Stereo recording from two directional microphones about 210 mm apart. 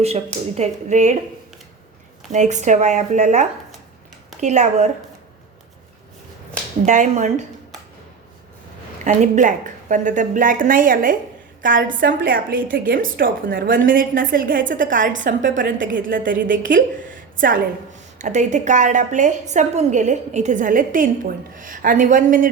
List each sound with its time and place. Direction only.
0.5 s a woman's voice: 35° right (ahead or behind)
2.3 s a woman's voice: 35° right (ahead or behind)
6.8 s a woman's voice: 35° right (ahead or behind)
9.0 s a woman's voice: 35° right (ahead or behind)